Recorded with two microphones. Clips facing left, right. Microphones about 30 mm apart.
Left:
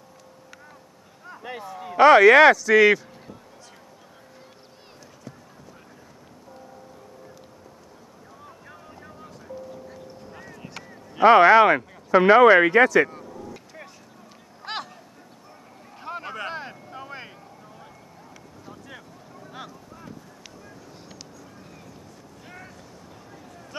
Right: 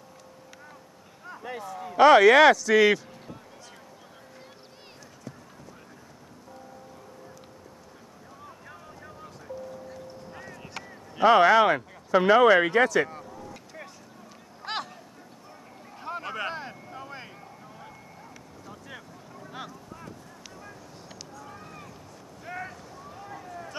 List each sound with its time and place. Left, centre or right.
1.4 s speech: centre
9.0 s music: centre
11.3 s speech: centre
12.5 s vehicle: centre
14.6 s a sound: centre
16.0 s boat: centre
16.5 s vehicle: centre
18.7 s boat: centre
23.3 s vehicle: centre